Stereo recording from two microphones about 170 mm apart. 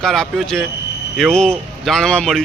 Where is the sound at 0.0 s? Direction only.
Centre (ahead or behind).